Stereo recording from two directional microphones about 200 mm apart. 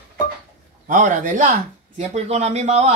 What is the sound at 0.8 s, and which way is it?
Speech, 40° right (ahead or behind).